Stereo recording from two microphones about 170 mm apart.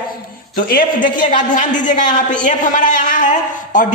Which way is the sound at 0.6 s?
55° left (ahead or behind).